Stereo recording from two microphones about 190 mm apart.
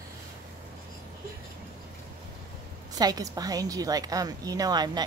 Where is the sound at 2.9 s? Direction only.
20° right (ahead or behind).